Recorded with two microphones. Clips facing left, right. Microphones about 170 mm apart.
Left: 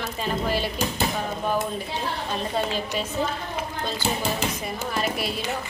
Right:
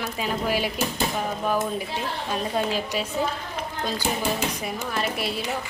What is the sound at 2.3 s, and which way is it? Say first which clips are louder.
Speech: right 2 dB; 5° right (ahead or behind).